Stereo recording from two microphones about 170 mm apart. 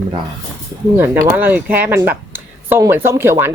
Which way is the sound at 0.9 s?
15° right (ahead or behind).